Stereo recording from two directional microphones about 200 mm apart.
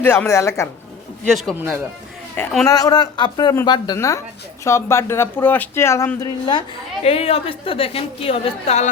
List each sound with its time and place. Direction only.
0.0 s speech: 10° left (ahead or behind)
1.2 s a man's voice: centre (ahead or behind)
1.5 s a man's voice: 10° right (ahead or behind)
2.6 s a woman's voice: 20° left (ahead or behind)
7.0 s a woman's voice: 30° left (ahead or behind)